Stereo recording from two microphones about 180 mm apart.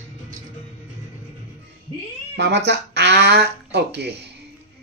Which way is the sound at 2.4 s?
70° right (ahead or behind).